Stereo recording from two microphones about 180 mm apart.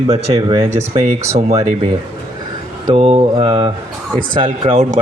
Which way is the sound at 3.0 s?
30° right (ahead or behind).